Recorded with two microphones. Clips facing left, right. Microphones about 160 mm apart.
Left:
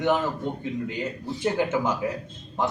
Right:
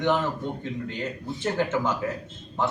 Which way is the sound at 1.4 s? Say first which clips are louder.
Left 1 dB; 10° left (ahead or behind).